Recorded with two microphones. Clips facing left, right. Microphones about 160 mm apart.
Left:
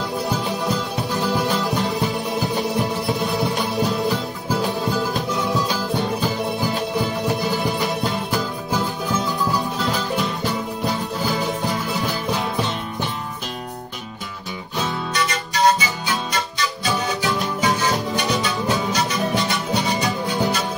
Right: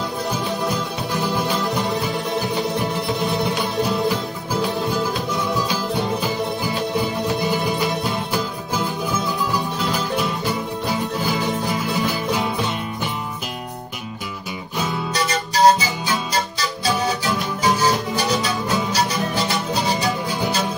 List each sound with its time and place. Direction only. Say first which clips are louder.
15.1 s music: right 3 dB; 40° right (ahead or behind)